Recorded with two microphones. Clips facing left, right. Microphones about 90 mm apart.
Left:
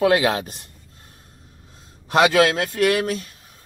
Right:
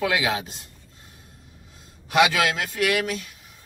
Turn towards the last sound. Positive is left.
turn(degrees=40)  # may be behind; listen again after turning